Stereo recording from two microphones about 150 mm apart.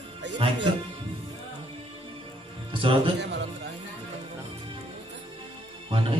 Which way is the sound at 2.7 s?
35° right (ahead or behind).